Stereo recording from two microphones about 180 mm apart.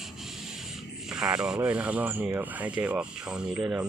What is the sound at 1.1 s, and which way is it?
Speech, 5° right (ahead or behind).